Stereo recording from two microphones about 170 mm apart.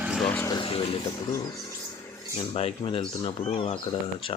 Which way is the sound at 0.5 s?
30° left (ahead or behind).